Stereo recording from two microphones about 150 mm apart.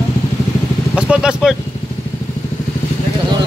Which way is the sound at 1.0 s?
5° right (ahead or behind).